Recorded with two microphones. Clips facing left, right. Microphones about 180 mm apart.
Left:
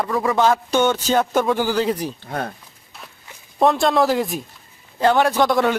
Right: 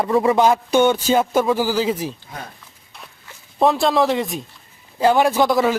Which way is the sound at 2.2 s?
60° left (ahead or behind).